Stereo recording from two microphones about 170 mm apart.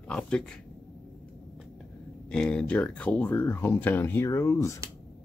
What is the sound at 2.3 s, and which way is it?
Speech, 5° left (ahead or behind).